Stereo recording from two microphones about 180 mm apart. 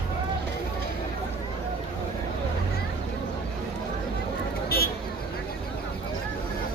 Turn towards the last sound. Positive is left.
turn(degrees=55)  # may be behind; listen again after turning